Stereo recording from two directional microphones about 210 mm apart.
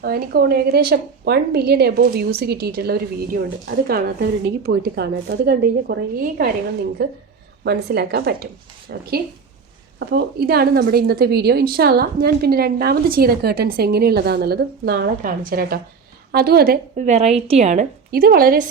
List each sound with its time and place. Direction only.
0.0 s a woman's voice: 45° right (ahead or behind)
7.6 s a woman's voice: 50° right (ahead or behind); by 17.8 s 35° right (ahead or behind)
18.1 s a woman's voice: 45° right (ahead or behind)